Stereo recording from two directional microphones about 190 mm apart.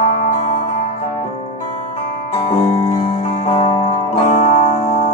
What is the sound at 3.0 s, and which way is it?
Music, 35° left (ahead or behind).